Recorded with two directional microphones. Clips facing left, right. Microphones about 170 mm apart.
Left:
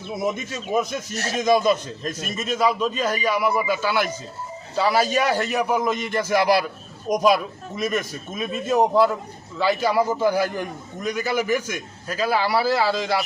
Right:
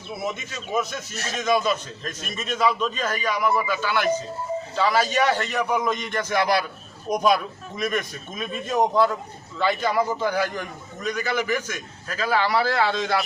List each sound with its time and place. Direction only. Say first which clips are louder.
0.7 s a man's voice: left 3 dB; 15° left (ahead or behind)
1.1 s speech: left 5 dB; 35° left (ahead or behind)
1.5 s a man's voice: left 4 dB; 15° left (ahead or behind)